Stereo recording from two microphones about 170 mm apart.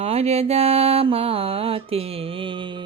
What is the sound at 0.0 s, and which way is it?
Mantra, 35° right (ahead or behind).